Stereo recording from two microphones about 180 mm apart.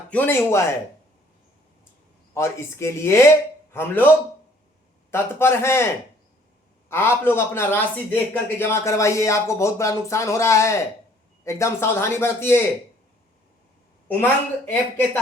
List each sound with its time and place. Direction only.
0.1 s a man's voice: 10° left (ahead or behind)
2.3 s a man's voice: 15° left (ahead or behind)
5.1 s a man's voice: 15° left (ahead or behind)
14.1 s a man's voice: 10° left (ahead or behind)